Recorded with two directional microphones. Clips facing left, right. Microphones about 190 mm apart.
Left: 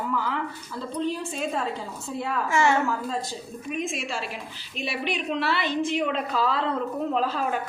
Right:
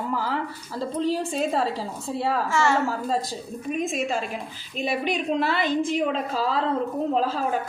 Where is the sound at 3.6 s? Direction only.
40° right (ahead or behind).